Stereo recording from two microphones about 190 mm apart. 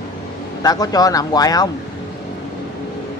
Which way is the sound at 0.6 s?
20° left (ahead or behind).